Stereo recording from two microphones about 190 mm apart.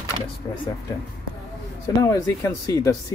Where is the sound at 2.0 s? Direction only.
15° left (ahead or behind).